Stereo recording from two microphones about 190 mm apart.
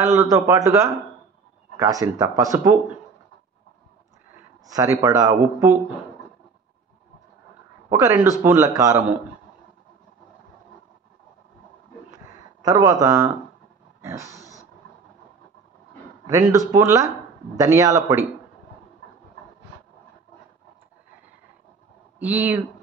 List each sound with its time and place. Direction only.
0.0 s speech: 15° right (ahead or behind)
4.7 s speech: 20° right (ahead or behind)
7.9 s speech: 10° right (ahead or behind)
12.6 s speech: 20° right (ahead or behind)
14.3 s a sound: 15° left (ahead or behind)
16.3 s speech: 15° right (ahead or behind)
22.2 s speech: 10° right (ahead or behind)